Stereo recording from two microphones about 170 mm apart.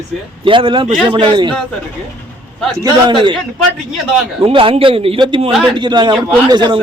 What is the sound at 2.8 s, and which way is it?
Speech, 25° right (ahead or behind).